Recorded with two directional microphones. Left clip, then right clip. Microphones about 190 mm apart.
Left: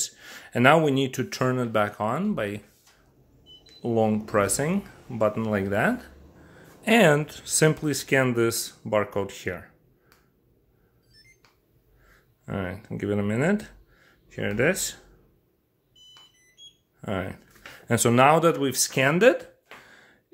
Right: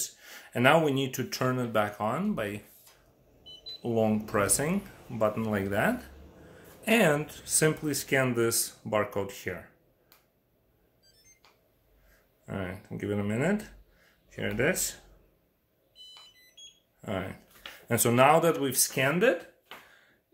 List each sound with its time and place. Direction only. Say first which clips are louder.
0.0 s speech: left 5 dB; 40° left (ahead or behind)
3.8 s speech: left 4 dB; 35° left (ahead or behind)
12.1 s speech: left 5 dB; 35° left (ahead or behind)
17.0 s speech: left 4 dB; 35° left (ahead or behind)
19.9 s a sound: left 7 dB; 50° left (ahead or behind)